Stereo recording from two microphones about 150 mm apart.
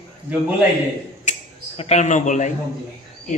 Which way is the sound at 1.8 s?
50° left (ahead or behind).